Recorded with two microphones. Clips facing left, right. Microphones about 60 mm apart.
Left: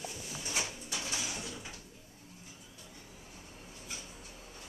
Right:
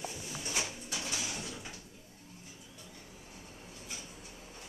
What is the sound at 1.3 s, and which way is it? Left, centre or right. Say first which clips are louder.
Sliding door: even; centre.